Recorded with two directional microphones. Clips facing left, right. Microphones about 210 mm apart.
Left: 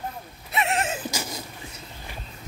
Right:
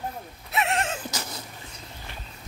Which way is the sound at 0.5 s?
Centre (ahead or behind).